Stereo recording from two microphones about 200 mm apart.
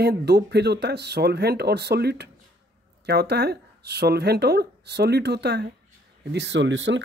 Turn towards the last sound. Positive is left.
turn(degrees=-65)  # may be behind; listen again after turning